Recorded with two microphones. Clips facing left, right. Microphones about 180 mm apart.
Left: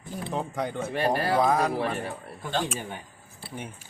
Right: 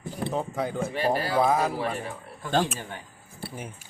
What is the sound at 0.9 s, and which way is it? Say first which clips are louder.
Speech: left 1 dB; 55° left (ahead or behind).